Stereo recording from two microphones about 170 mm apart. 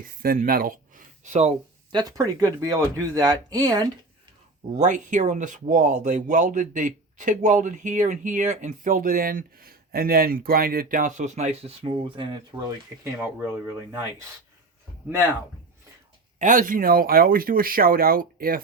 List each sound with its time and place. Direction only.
0.0 s speech: 55° right (ahead or behind)
1.9 s speech: 25° right (ahead or behind)
4.7 s speech: 50° right (ahead or behind); by 12.7 s 25° right (ahead or behind)
13.2 s speech: 10° right (ahead or behind)
16.4 s speech: 50° right (ahead or behind)